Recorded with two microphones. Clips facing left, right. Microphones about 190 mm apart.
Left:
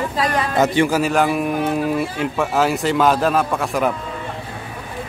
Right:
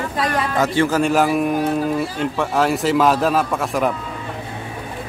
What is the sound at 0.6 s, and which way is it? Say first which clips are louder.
Speech: left 2 dB; 15° left (ahead or behind).